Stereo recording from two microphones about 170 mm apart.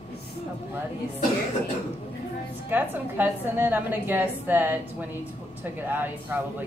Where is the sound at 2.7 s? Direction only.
10° right (ahead or behind).